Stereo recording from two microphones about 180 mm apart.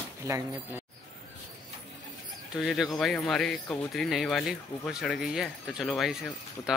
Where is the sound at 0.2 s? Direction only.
15° right (ahead or behind).